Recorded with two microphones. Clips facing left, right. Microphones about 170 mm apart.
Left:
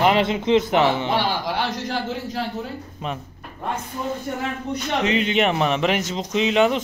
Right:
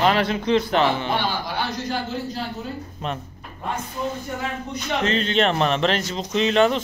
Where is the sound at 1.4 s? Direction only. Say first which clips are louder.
Left 2 dB; 90° left.